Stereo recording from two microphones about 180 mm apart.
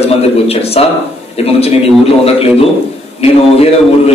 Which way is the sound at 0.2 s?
35° left (ahead or behind).